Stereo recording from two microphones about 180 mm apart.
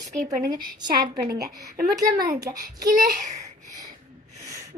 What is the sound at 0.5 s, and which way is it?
Child singing, 20° right (ahead or behind).